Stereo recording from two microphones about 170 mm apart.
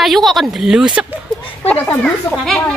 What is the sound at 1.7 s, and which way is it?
Speech, 5° left (ahead or behind).